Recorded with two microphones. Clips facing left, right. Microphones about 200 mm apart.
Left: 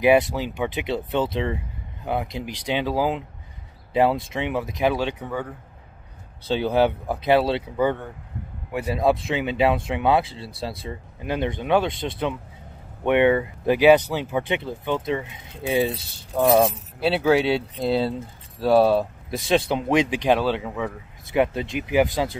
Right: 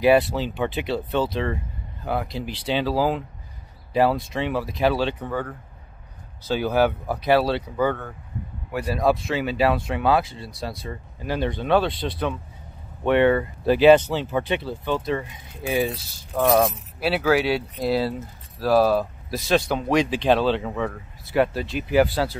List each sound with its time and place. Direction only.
0.0 s speech: 15° left (ahead or behind)
6.4 s speech: 25° left (ahead or behind); by 20.9 s 5° left (ahead or behind)
21.3 s speech: 20° left (ahead or behind)